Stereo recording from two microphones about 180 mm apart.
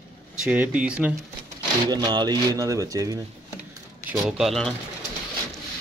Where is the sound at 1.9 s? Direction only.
25° right (ahead or behind).